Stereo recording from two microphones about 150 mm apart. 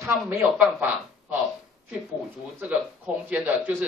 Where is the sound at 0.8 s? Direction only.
10° right (ahead or behind).